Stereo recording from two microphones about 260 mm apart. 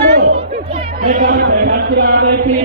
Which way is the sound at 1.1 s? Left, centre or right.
Right.